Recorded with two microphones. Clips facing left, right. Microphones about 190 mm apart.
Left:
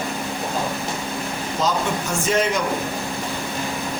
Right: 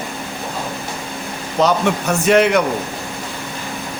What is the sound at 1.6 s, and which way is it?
Speech, 70° right (ahead or behind).